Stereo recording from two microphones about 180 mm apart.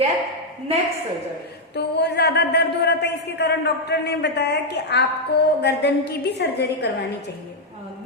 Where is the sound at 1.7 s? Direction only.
65° left (ahead or behind).